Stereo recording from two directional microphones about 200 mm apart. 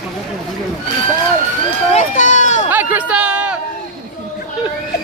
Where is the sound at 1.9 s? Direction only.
35° left (ahead or behind).